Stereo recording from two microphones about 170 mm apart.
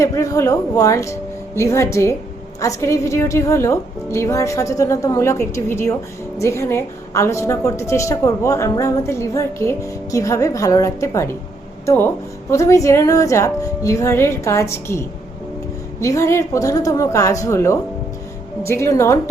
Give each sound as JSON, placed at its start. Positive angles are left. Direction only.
{"t": 0.0, "sound": "a woman's voice", "side_deg": 20}
{"t": 12.5, "sound": "a woman's voice", "side_deg": 20}